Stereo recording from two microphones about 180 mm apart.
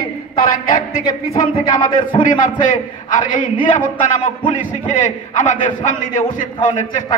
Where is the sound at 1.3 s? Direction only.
30° left (ahead or behind).